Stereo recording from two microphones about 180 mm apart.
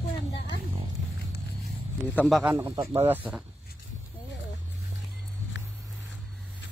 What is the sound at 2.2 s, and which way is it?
Speech, centre (ahead or behind).